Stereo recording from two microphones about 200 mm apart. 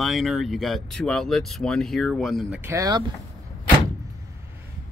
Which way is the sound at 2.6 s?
15° right (ahead or behind).